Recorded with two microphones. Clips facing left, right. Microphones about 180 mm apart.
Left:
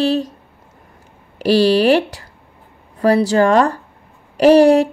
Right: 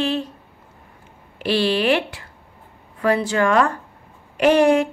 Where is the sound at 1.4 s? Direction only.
40° left (ahead or behind).